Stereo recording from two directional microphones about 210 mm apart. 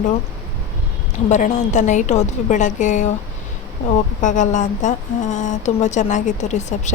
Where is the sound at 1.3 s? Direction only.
35° left (ahead or behind).